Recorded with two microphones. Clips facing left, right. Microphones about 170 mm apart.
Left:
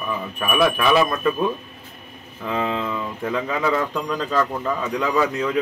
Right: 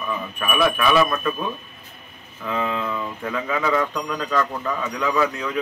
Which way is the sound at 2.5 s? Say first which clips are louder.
Left 1 dB; 25° left (ahead or behind).